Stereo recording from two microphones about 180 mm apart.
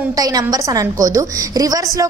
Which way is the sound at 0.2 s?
20° right (ahead or behind).